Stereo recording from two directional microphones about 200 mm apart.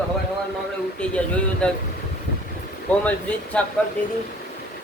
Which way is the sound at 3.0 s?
5° left (ahead or behind).